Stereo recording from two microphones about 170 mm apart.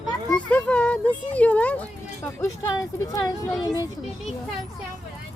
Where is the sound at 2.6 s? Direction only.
20° left (ahead or behind).